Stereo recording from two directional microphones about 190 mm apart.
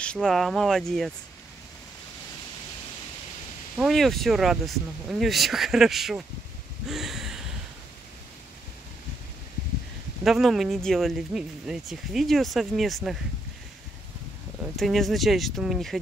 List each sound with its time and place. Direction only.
0.0 s speech: 5° left (ahead or behind)
3.7 s speech: centre (ahead or behind)
6.9 s a sound: centre (ahead or behind)
10.2 s speech: centre (ahead or behind)
14.8 s speech: centre (ahead or behind)